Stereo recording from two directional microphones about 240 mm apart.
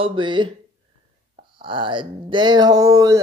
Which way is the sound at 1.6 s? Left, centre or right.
Right.